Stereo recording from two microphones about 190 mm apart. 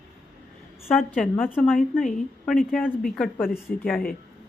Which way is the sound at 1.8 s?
45° left (ahead or behind).